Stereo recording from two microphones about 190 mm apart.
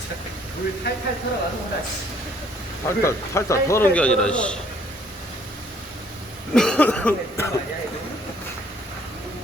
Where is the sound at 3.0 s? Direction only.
15° left (ahead or behind).